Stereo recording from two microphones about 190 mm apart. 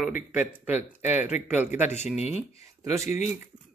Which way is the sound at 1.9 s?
35° left (ahead or behind).